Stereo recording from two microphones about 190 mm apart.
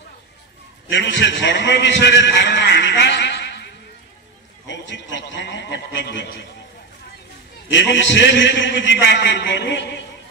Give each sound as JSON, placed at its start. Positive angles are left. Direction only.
{"t": 0.8, "sound": "a man's voice", "side_deg": 70}
{"t": 4.6, "sound": "a man's voice", "side_deg": 75}
{"t": 7.7, "sound": "a man's voice", "side_deg": 70}